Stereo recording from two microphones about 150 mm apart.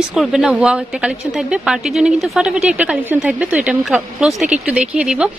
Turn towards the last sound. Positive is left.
turn(degrees=-5)  # may be behind; listen again after turning